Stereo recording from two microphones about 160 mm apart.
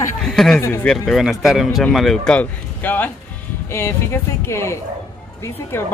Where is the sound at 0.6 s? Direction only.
15° left (ahead or behind).